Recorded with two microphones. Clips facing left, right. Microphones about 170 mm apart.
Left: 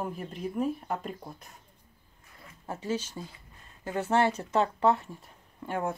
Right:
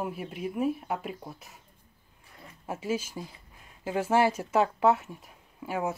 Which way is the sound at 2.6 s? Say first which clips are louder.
Right 1 dB; 10° right (ahead or behind).